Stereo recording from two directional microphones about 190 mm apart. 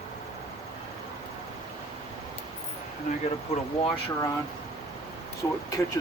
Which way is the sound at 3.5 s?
30° left (ahead or behind).